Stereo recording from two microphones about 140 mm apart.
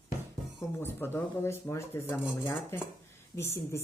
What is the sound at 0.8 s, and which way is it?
Speech, 15° left (ahead or behind).